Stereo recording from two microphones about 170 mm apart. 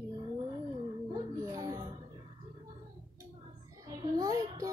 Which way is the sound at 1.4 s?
20° right (ahead or behind).